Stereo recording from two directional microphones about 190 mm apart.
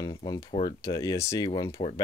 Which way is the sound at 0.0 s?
20° left (ahead or behind).